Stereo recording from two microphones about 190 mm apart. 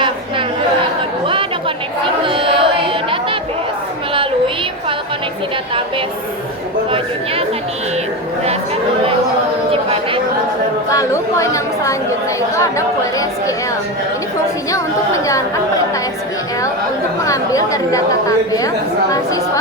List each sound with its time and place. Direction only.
1.3 s chatter: 25° right (ahead or behind)
2.2 s a sound: 25° right (ahead or behind)
4.1 s music: 25° right (ahead or behind)
10.9 s chatter: 15° left (ahead or behind)
12.5 s speech: 15° left (ahead or behind)
14.7 s a woman's voice: 15° left (ahead or behind)
17.2 s a woman's voice: 15° left (ahead or behind)